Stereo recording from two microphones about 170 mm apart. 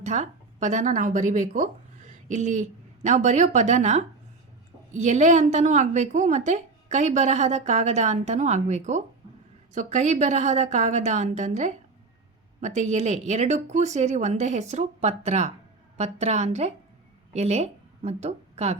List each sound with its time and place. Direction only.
0.0 s a woman's voice: 45° right (ahead or behind)